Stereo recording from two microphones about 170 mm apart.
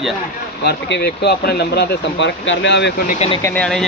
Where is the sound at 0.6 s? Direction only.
85° left.